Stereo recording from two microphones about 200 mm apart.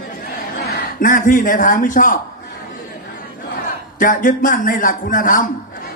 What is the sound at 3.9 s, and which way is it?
A man's voice, 40° left (ahead or behind).